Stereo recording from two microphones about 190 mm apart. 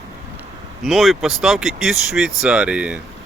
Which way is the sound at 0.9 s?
Centre (ahead or behind).